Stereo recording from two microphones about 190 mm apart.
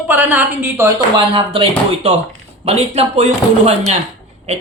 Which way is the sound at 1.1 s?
30° right (ahead or behind).